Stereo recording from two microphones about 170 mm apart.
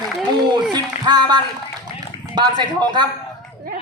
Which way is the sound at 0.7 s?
25° right (ahead or behind).